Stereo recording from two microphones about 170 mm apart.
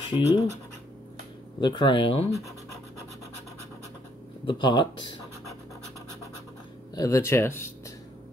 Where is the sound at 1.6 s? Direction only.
25° left (ahead or behind).